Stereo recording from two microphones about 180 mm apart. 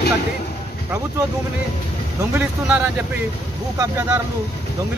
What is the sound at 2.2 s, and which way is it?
Speech, 10° right (ahead or behind).